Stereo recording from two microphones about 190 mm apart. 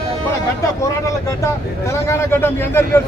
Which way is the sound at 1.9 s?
10° left (ahead or behind).